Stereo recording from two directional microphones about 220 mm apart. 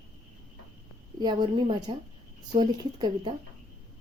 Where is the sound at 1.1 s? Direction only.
20° right (ahead or behind).